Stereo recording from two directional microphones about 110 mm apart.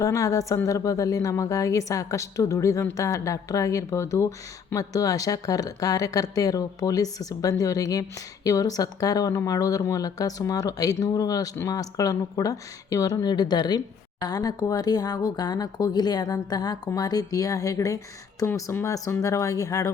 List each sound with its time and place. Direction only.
0.0 s a woman's voice: 30° left (ahead or behind)